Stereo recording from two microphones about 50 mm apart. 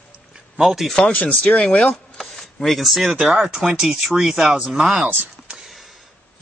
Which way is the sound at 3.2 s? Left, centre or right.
Centre.